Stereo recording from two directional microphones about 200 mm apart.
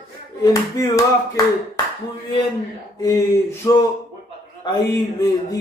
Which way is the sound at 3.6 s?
20° left (ahead or behind).